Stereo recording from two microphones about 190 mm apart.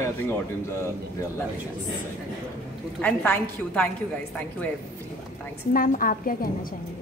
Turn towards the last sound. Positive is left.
turn(degrees=50)  # may be behind; listen again after turning